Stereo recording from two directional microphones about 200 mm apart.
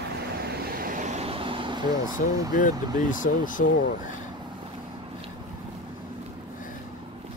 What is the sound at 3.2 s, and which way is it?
Speech, 40° left (ahead or behind).